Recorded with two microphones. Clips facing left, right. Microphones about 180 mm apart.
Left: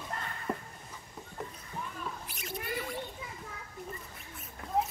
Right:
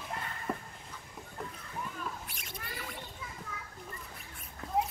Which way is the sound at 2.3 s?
Centre (ahead or behind).